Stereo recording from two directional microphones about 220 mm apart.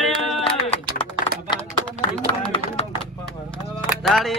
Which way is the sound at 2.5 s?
25° left (ahead or behind).